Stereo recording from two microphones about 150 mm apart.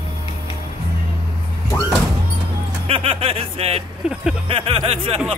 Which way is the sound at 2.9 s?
40° right (ahead or behind).